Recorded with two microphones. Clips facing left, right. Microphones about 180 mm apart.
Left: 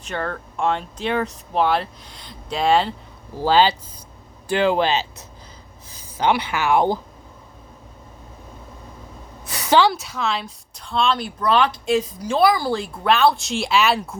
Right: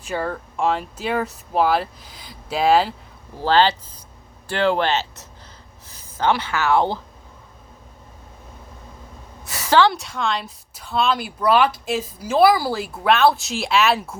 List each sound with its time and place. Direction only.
0.0 s speech: 5° right (ahead or behind)
3.4 s speech: 10° left (ahead or behind)
9.6 s a woman's voice: 15° left (ahead or behind)
9.9 s speech: centre (ahead or behind)